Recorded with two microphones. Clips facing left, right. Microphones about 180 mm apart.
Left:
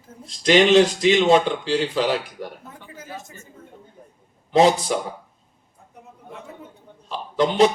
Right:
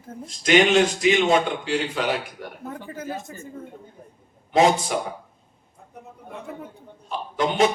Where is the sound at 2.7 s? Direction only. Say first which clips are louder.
Right 6 dB; 55° right (ahead or behind).